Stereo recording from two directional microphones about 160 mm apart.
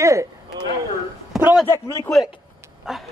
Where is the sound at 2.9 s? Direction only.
Centre (ahead or behind).